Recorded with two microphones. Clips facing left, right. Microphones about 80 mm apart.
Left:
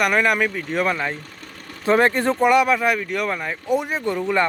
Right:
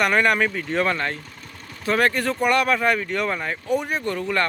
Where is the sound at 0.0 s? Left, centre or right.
Centre.